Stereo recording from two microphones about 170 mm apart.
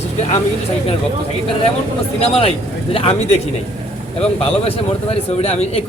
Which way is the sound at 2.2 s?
35° left (ahead or behind).